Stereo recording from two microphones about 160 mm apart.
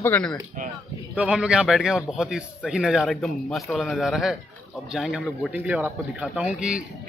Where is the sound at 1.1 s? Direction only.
10° right (ahead or behind).